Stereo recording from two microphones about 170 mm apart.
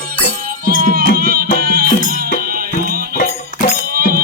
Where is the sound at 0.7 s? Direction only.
55° right (ahead or behind).